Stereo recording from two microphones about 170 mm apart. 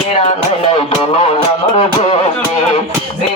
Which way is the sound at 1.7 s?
40° left (ahead or behind).